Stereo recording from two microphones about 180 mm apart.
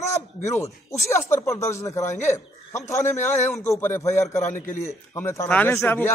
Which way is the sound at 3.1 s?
15° left (ahead or behind).